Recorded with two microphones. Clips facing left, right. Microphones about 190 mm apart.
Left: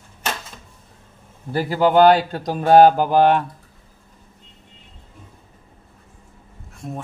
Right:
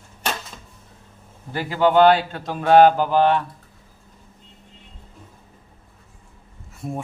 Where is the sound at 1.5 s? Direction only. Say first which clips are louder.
Left 1 dB; 40° left (ahead or behind).